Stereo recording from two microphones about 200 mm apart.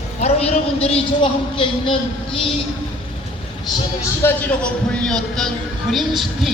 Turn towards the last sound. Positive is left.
turn(degrees=0)  # may be behind; listen again after turning